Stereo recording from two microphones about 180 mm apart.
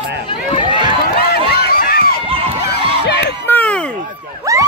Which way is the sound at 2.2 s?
30° right (ahead or behind).